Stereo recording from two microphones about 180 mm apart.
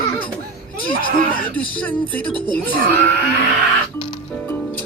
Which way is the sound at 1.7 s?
10° left (ahead or behind).